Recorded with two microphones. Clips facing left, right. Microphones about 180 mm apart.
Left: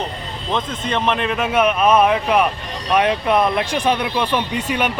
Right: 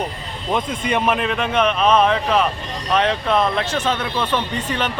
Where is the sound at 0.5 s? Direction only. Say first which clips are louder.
Right 1 dB; 10° right (ahead or behind).